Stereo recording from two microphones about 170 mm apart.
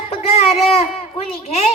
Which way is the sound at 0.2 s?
35° left (ahead or behind).